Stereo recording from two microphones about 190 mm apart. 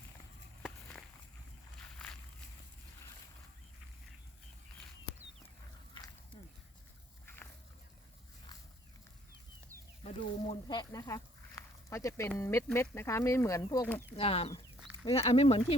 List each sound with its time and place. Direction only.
5.9 s a sound: 20° left (ahead or behind)
10.0 s speech: 30° left (ahead or behind)
14.2 s speech: 30° left (ahead or behind)